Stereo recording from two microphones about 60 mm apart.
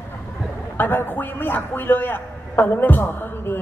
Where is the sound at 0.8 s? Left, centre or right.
Left.